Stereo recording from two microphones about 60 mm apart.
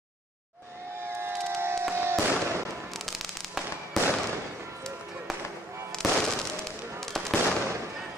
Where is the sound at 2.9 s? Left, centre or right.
Centre.